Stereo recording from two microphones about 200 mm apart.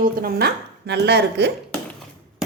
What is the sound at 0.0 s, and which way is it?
Speech, 50° right (ahead or behind).